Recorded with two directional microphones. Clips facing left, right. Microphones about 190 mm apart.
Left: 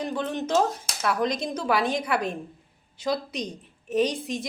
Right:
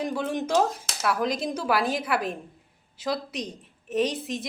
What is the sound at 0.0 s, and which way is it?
A woman's voice, 10° right (ahead or behind).